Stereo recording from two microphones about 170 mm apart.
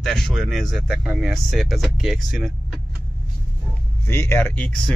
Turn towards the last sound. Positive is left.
turn(degrees=10)  # may be behind; listen again after turning